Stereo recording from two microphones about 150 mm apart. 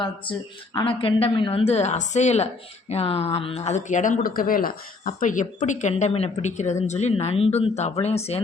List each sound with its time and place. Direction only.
0.0 s a woman's voice: 35° left (ahead or behind)